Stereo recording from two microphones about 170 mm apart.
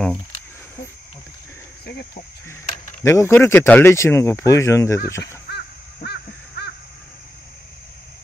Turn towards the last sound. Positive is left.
turn(degrees=70)  # may be behind; listen again after turning